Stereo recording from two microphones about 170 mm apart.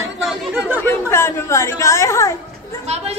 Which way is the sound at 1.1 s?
15° left (ahead or behind).